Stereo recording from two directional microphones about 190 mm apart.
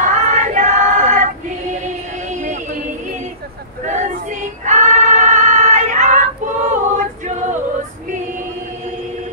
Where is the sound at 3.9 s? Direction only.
40° right (ahead or behind).